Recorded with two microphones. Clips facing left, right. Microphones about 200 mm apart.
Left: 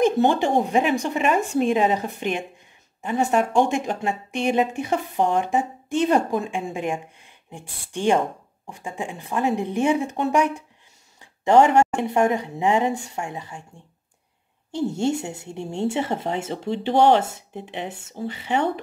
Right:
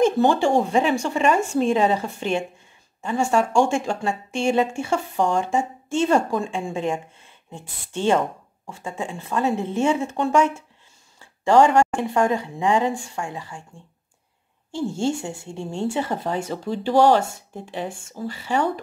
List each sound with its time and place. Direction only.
0.0 s speech: 20° left (ahead or behind)
14.7 s speech: 20° left (ahead or behind)